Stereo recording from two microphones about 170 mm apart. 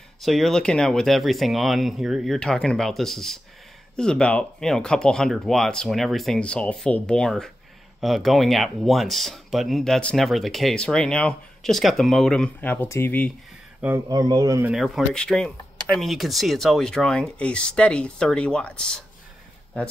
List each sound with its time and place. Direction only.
0.2 s speech: centre (ahead or behind)
13.7 s speech: 10° right (ahead or behind)
14.0 s speech: 25° right (ahead or behind)
14.7 s speech: centre (ahead or behind)